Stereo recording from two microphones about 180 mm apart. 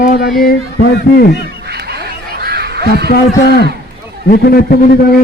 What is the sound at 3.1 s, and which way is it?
Speech, 60° left (ahead or behind).